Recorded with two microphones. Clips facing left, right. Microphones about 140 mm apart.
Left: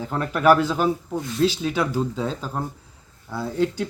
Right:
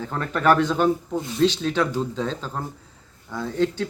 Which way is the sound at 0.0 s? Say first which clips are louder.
Left 2 dB; 10° left (ahead or behind).